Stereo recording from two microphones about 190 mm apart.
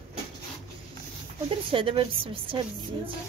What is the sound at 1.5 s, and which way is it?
A woman's voice, 25° right (ahead or behind).